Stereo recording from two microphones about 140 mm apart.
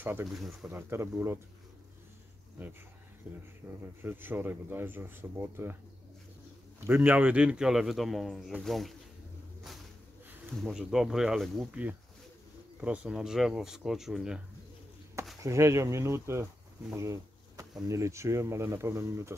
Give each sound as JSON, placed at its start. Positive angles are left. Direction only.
{"t": 0.0, "sound": "speech", "side_deg": -15}
{"t": 0.3, "sound": "a man's voice", "side_deg": 0}
{"t": 0.7, "sound": "speech", "side_deg": -15}
{"t": 3.3, "sound": "speech", "side_deg": -10}
{"t": 6.8, "sound": "a man's voice", "side_deg": -10}
{"t": 10.6, "sound": "a man's voice", "side_deg": -5}
{"t": 12.8, "sound": "a man's voice", "side_deg": -10}
{"t": 15.4, "sound": "speech", "side_deg": -20}